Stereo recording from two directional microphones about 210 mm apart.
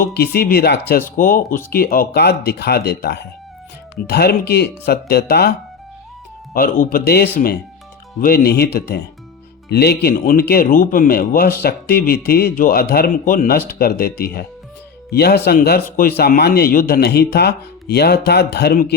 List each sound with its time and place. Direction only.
0.0 s speech: 50° left (ahead or behind)